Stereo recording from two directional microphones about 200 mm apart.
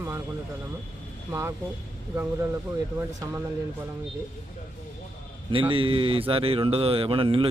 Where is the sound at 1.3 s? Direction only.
15° right (ahead or behind).